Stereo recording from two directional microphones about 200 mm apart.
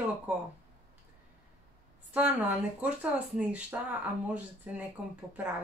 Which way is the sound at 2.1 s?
10° right (ahead or behind).